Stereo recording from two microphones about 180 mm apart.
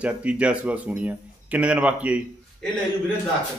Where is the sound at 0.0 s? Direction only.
5° right (ahead or behind).